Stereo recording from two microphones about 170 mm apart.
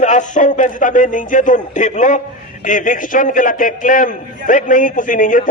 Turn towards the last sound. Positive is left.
turn(degrees=50)  # may be behind; listen again after turning